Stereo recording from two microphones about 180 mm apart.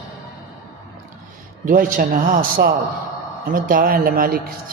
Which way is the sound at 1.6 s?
50° right (ahead or behind).